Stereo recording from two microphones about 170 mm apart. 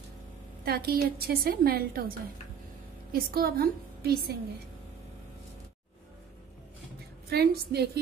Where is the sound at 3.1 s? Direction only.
60° right (ahead or behind).